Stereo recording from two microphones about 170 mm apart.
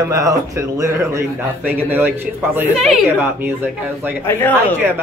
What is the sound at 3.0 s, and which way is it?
Speech, 10° right (ahead or behind).